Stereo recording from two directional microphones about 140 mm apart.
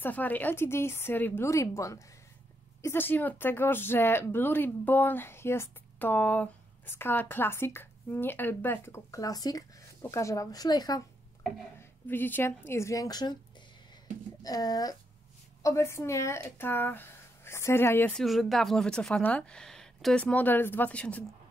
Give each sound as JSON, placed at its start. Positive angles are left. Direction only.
{"t": 0.0, "sound": "speech", "side_deg": 10}
{"t": 11.8, "sound": "speech", "side_deg": 15}
{"t": 14.4, "sound": "speech", "side_deg": 25}
{"t": 18.2, "sound": "speech", "side_deg": 0}